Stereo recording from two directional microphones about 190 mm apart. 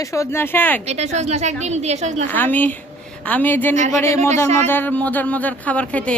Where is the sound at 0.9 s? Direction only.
35° right (ahead or behind).